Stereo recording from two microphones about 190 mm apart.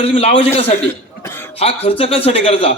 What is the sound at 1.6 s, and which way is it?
A man's voice, 30° left (ahead or behind).